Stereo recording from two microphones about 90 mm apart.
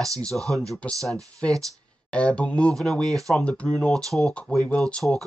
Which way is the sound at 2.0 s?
10° left (ahead or behind).